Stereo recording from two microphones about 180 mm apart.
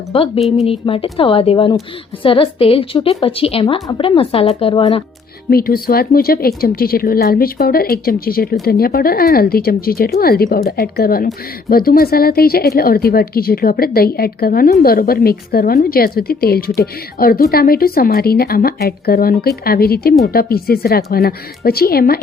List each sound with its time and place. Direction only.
0.1 s a woman's voice: 30° left (ahead or behind)
5.5 s speech: 55° left (ahead or behind)